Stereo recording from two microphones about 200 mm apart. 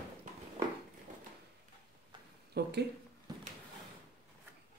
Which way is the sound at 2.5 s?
55° right (ahead or behind).